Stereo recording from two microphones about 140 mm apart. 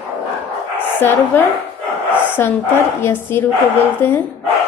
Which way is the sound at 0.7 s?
15° left (ahead or behind).